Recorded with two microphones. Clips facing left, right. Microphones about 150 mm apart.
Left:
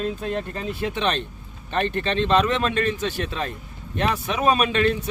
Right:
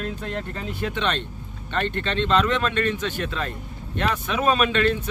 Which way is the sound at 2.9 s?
35° left (ahead or behind).